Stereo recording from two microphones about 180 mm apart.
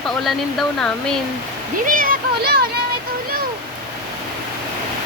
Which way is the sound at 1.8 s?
50° right (ahead or behind).